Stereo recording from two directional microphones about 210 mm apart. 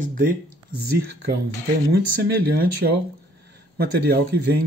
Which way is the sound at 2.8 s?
55° right (ahead or behind).